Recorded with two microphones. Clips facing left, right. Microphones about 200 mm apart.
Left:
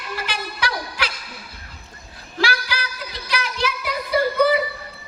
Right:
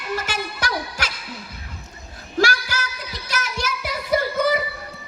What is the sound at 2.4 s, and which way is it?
Music, 45° right (ahead or behind).